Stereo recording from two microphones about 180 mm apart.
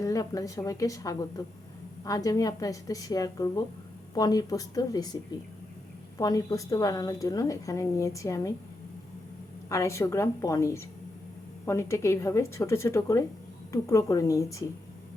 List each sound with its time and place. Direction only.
0.0 s a woman's voice: 20° left (ahead or behind)
6.1 s a woman's voice: 20° left (ahead or behind)
9.6 s a woman's voice: 15° left (ahead or behind)